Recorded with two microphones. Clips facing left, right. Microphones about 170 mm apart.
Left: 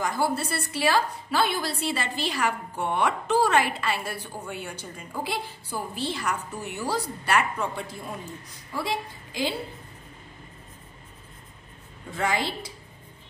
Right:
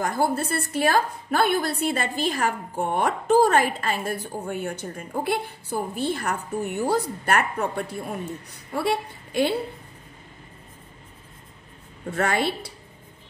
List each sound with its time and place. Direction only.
0.0 s a woman's voice: 50° right (ahead or behind)
12.1 s a woman's voice: 65° right (ahead or behind)